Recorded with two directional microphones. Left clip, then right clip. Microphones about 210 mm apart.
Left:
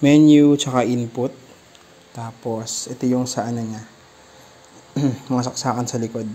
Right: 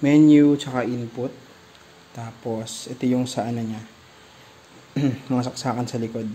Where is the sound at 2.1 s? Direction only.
10° left (ahead or behind).